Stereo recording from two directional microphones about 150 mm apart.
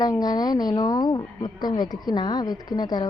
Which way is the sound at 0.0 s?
25° left (ahead or behind).